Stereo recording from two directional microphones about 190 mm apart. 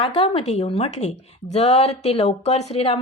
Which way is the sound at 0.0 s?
30° left (ahead or behind).